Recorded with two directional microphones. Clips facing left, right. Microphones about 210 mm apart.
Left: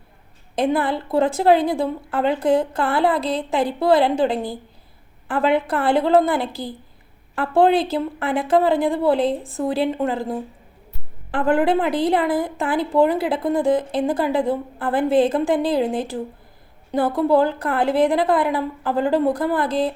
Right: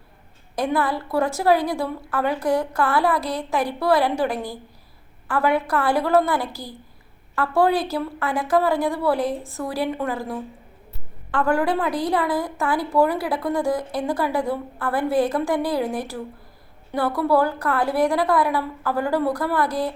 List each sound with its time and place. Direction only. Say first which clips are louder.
0.5 s a woman's voice: left 3 dB; 25° left (ahead or behind)
17.2 s a woman's voice: left 2 dB; 20° left (ahead or behind)